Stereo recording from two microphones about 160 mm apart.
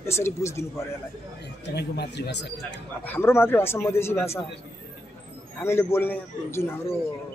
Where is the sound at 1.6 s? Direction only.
90° left.